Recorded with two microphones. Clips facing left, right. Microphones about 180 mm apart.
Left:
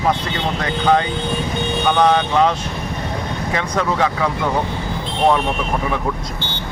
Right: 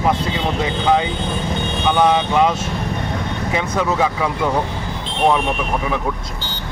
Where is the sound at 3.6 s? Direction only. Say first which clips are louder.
Even; 10° right (ahead or behind).